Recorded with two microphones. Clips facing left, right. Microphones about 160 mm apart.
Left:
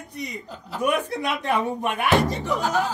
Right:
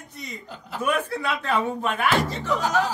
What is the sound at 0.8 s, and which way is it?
A man's voice, 15° left (ahead or behind).